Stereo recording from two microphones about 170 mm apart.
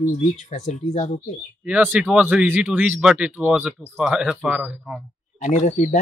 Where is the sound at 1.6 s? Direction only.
10° right (ahead or behind).